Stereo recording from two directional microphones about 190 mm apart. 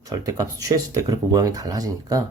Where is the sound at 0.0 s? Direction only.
20° right (ahead or behind).